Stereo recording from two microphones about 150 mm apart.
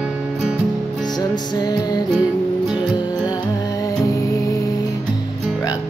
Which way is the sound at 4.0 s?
20° left (ahead or behind).